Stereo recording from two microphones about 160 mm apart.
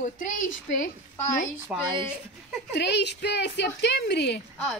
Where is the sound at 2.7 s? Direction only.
90° left.